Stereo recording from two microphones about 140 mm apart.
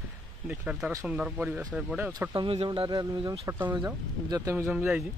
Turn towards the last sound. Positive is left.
turn(degrees=-10)  # may be behind; listen again after turning